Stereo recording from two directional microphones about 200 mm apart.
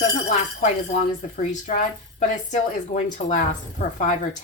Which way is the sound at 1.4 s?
35° left (ahead or behind).